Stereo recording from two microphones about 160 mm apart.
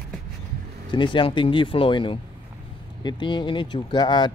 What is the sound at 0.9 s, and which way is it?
Speech, 30° left (ahead or behind).